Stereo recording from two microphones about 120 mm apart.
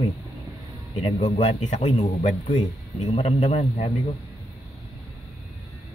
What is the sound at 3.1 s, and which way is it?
Speech, 70° left (ahead or behind).